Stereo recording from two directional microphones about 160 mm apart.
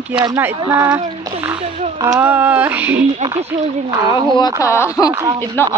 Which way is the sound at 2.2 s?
10° right (ahead or behind).